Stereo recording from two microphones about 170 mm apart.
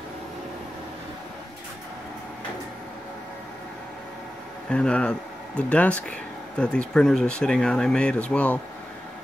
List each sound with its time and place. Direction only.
4.6 s speech: 5° left (ahead or behind)